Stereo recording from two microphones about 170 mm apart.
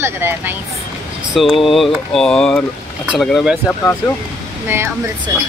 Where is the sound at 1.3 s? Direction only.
Centre (ahead or behind).